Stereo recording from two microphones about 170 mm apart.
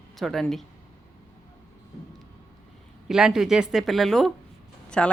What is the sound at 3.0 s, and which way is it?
A woman's voice, 5° right (ahead or behind).